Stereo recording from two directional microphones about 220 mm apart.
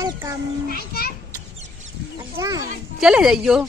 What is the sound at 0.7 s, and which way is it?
Speech, 45° left (ahead or behind).